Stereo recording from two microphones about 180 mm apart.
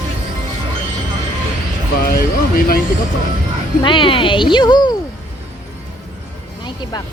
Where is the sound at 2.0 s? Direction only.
55° left (ahead or behind).